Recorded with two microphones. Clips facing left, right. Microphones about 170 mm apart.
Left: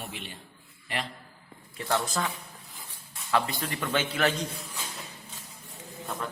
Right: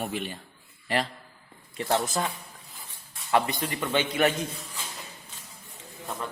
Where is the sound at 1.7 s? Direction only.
25° right (ahead or behind).